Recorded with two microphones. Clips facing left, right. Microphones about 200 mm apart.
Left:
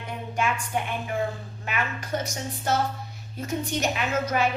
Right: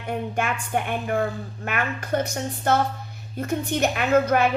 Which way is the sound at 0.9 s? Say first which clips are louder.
Right 4 dB; 55° right (ahead or behind).